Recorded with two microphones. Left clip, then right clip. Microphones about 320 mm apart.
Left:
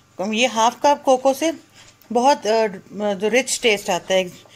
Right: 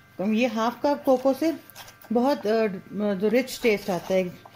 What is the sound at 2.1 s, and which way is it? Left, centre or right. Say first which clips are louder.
Speech: left 7 dB; left.